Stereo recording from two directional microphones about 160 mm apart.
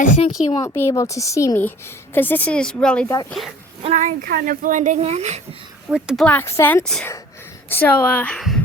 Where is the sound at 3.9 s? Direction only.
60° right (ahead or behind); by 5.7 s 40° right (ahead or behind).